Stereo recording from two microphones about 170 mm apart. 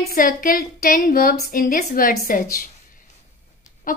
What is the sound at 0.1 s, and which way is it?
A woman's voice, 55° left (ahead or behind).